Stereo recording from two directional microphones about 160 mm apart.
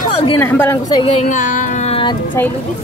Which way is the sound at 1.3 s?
50° left (ahead or behind).